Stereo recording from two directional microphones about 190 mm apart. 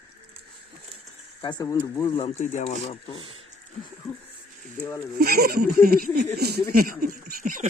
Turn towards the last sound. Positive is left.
turn(degrees=-45)  # may be behind; listen again after turning